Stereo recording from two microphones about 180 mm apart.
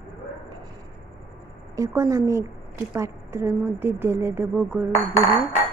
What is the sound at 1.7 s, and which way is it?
A woman's voice, 15° right (ahead or behind).